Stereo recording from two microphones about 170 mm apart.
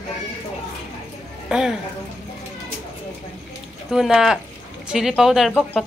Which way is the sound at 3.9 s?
5° right (ahead or behind).